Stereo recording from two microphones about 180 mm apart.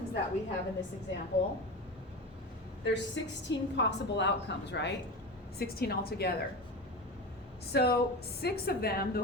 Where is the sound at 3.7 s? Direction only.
75° left (ahead or behind).